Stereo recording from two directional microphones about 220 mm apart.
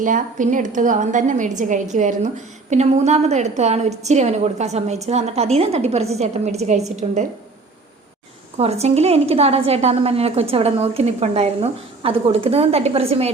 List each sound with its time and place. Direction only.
0.0 s a woman's voice: 35° right (ahead or behind)
8.5 s a woman's voice: 30° right (ahead or behind)